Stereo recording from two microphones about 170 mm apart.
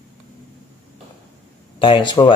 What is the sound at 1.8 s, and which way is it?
Speech, 30° left (ahead or behind).